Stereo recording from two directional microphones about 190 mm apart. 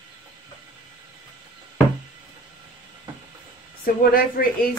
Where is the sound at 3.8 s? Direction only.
50° left (ahead or behind).